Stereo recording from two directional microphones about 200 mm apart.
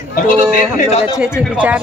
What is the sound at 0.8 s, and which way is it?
Speech, 30° left (ahead or behind).